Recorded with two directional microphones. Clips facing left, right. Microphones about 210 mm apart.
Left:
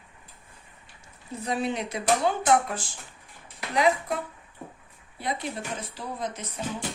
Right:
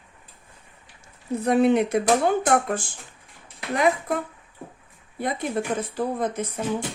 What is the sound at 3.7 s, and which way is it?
Speech, 50° right (ahead or behind).